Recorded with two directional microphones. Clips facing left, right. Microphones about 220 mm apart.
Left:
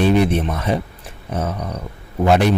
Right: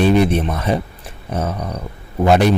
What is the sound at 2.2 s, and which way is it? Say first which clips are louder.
Speech: right 2 dB; 35° right (ahead or behind).